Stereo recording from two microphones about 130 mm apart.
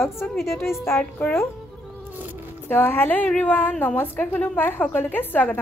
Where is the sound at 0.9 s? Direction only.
10° left (ahead or behind).